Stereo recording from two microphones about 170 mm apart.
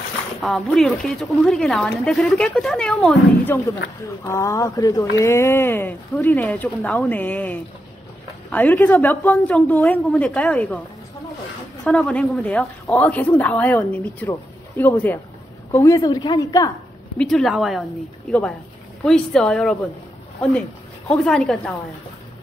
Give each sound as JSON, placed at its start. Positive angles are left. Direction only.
{"t": 0.4, "sound": "a woman's voice", "side_deg": 0}
{"t": 3.4, "sound": "speech", "side_deg": 15}
{"t": 11.8, "sound": "a woman's voice", "side_deg": 5}
{"t": 17.2, "sound": "a woman's voice", "side_deg": 0}
{"t": 19.0, "sound": "a woman's voice", "side_deg": 5}
{"t": 21.1, "sound": "a woman's voice", "side_deg": 5}